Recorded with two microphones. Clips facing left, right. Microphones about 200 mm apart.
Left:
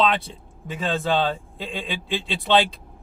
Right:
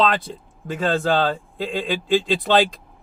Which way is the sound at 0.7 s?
45° right (ahead or behind).